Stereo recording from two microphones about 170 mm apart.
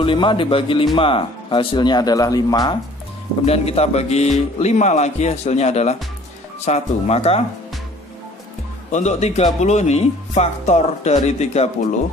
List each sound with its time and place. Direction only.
0.0 s speech: 30° left (ahead or behind)
3.4 s speech: 35° left (ahead or behind)
8.9 s speech: 40° left (ahead or behind)